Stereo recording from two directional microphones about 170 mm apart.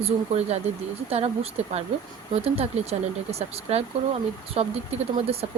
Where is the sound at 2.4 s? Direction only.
35° right (ahead or behind).